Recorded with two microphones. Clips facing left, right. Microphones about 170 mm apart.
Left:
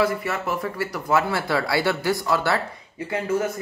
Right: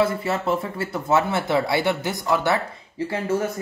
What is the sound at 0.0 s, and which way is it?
Speech, 25° right (ahead or behind).